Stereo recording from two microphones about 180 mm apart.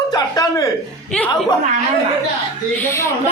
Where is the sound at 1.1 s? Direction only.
5° left (ahead or behind).